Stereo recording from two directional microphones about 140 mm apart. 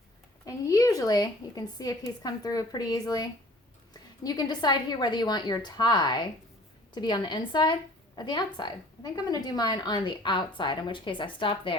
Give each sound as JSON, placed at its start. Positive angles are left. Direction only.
{"t": 0.4, "sound": "a woman's voice", "side_deg": 25}